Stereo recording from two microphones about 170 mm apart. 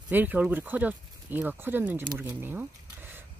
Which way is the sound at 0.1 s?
10° right (ahead or behind).